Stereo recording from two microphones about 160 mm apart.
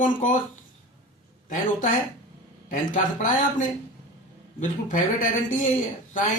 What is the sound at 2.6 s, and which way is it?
Speech, 55° left (ahead or behind).